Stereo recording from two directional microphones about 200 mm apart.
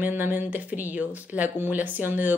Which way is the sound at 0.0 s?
10° right (ahead or behind).